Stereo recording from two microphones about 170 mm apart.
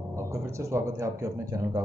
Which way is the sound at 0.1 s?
15° right (ahead or behind).